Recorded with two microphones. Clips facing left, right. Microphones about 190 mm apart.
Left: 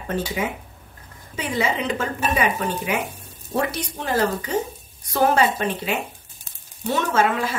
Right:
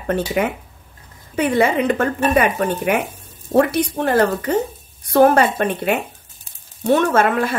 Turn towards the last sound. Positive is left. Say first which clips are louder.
# right 4 dB
turn(degrees=-55)  # may be behind; listen again after turning